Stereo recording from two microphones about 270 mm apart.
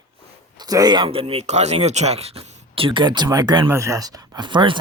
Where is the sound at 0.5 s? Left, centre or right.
Centre.